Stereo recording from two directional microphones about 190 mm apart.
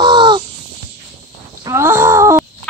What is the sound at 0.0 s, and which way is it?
Crow, 25° right (ahead or behind).